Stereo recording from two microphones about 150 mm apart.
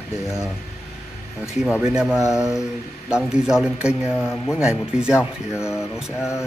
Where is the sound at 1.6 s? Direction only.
5° right (ahead or behind).